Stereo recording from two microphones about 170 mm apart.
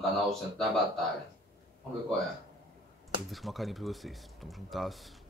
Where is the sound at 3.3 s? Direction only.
Centre (ahead or behind).